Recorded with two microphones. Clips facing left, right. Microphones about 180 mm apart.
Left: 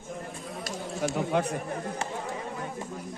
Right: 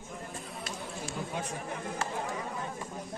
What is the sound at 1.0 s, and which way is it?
Speech, 70° left (ahead or behind).